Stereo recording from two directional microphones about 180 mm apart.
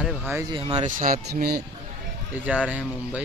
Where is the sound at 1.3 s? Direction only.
60° right (ahead or behind).